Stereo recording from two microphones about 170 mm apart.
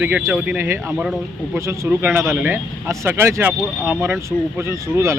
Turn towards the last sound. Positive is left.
turn(degrees=-15)  # may be behind; listen again after turning